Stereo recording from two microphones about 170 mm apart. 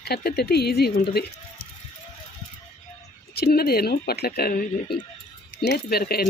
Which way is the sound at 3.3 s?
65° left (ahead or behind).